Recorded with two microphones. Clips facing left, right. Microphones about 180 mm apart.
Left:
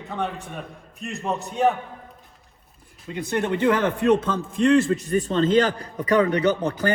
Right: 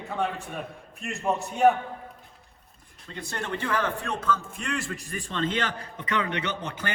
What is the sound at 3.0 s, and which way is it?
A man's voice, 15° left (ahead or behind).